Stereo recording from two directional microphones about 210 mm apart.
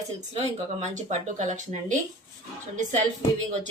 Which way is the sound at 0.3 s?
35° right (ahead or behind).